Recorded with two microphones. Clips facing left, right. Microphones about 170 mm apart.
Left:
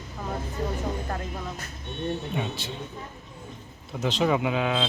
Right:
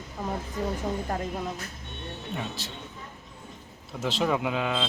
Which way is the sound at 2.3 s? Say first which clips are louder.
Left 4 dB; centre (ahead or behind).